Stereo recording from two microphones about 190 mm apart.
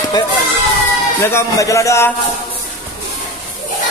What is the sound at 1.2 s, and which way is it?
Speech, 15° left (ahead or behind).